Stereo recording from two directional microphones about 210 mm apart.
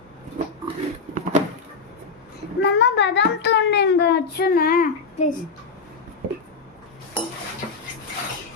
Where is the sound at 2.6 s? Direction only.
55° left (ahead or behind); by 5.3 s 35° left (ahead or behind).